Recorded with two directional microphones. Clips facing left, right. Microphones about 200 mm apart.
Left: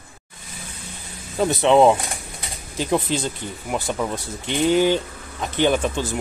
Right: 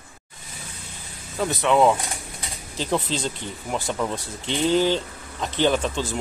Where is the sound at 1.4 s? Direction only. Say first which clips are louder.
Left 4 dB; 25° left (ahead or behind).